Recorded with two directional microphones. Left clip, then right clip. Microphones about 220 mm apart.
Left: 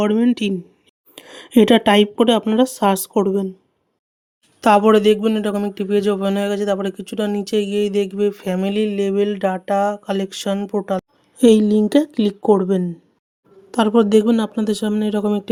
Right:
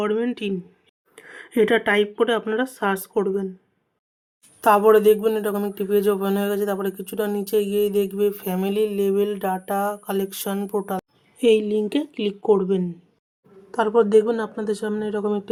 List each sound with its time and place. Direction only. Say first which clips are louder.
0.0 s speech: left 5 dB; 45° left (ahead or behind)
1.5 s speech: left 5 dB; 55° left (ahead or behind)
2.4 s speech: left 6 dB; 40° left (ahead or behind)
4.6 s speech: left 2 dB; 45° left (ahead or behind)